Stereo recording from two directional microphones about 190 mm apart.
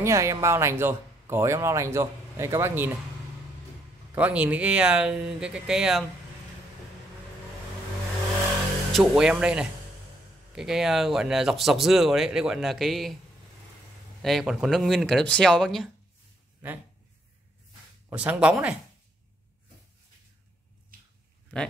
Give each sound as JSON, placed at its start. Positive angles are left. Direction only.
{"t": 0.0, "sound": "speech", "side_deg": -15}
{"t": 4.1, "sound": "speech", "side_deg": -5}
{"t": 8.9, "sound": "speech", "side_deg": 0}
{"t": 14.2, "sound": "speech", "side_deg": 0}
{"t": 18.1, "sound": "speech", "side_deg": -5}
{"t": 20.9, "sound": "a sound", "side_deg": -45}